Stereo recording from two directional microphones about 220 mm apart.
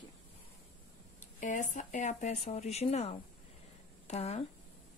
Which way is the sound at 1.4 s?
35° left (ahead or behind).